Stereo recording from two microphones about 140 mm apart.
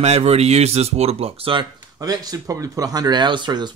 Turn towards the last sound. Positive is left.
turn(degrees=-30)  # may be behind; listen again after turning